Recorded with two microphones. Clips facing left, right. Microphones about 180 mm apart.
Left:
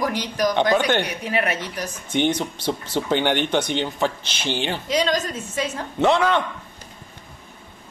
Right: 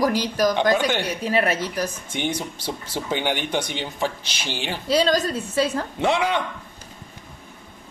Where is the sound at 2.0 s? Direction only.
10° right (ahead or behind).